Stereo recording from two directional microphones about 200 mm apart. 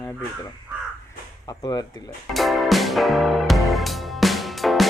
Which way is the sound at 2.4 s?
Centre (ahead or behind).